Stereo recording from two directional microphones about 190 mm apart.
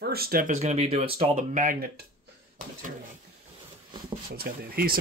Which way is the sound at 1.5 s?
50° right (ahead or behind).